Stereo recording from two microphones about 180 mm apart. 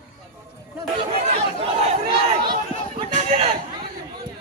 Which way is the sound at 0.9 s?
35° right (ahead or behind).